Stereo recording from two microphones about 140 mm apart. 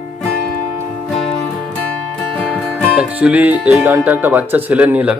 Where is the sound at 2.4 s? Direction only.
5° right (ahead or behind).